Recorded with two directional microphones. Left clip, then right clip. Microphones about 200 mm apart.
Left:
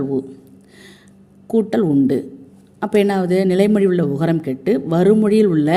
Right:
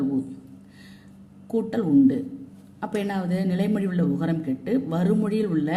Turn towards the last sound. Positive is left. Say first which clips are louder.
# left 10 dB
turn(degrees=45)  # may be behind; listen again after turning